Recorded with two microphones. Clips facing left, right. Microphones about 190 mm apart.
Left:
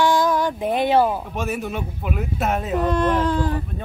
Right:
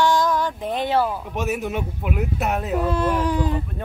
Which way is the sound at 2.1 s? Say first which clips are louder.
Left 1 dB; 5° right (ahead or behind).